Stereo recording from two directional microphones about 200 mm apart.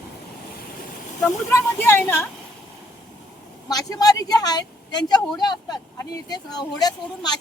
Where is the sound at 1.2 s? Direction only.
10° left (ahead or behind).